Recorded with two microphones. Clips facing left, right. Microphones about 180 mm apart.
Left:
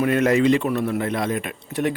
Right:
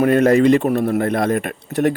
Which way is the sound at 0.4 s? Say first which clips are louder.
Right 5 dB; 50° right (ahead or behind).